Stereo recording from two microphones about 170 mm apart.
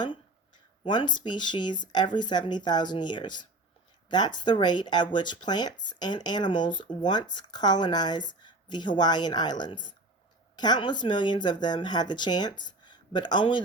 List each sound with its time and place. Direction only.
0.9 s speech: 25° left (ahead or behind)
8.3 s a sound: 25° left (ahead or behind)
8.7 s speech: 25° left (ahead or behind)